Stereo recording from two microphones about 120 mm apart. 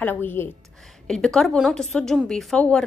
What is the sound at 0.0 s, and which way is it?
Speech, 15° left (ahead or behind).